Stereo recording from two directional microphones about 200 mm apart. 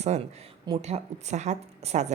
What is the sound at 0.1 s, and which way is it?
Speech, 35° right (ahead or behind).